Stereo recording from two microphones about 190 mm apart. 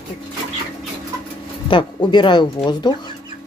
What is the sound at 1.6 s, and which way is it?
Speech, 25° left (ahead or behind).